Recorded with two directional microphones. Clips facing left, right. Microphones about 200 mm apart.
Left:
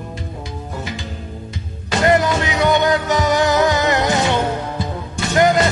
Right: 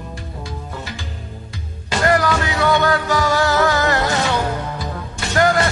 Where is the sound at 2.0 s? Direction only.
20° left (ahead or behind).